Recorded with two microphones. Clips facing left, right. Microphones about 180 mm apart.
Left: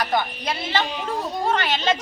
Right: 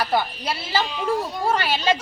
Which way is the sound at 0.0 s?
10° right (ahead or behind).